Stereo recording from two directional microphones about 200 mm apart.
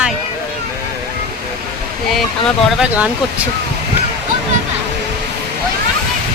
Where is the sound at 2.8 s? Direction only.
5° right (ahead or behind).